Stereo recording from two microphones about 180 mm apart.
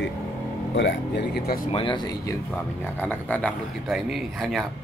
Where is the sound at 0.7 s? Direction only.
80° left; by 1.6 s 60° left (ahead or behind).